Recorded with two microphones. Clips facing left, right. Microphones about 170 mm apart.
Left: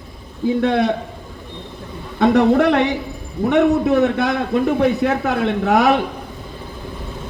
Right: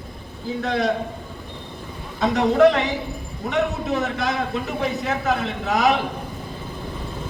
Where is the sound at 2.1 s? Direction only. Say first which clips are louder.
Left 5 dB; 60° left (ahead or behind).